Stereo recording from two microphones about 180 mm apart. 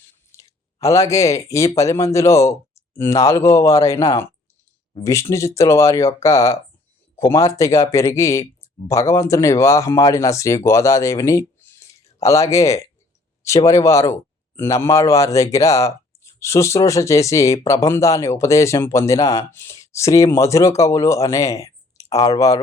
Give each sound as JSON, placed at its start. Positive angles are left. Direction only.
{"t": 0.3, "sound": "speech", "side_deg": 15}